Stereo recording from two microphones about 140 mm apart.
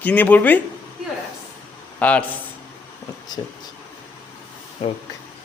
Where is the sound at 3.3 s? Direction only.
30° left (ahead or behind).